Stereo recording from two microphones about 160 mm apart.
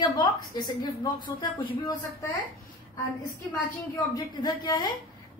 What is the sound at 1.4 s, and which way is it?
Speech, 30° left (ahead or behind).